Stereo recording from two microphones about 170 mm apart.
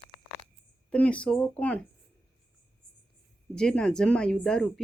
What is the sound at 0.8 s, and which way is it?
Speech, 5° left (ahead or behind).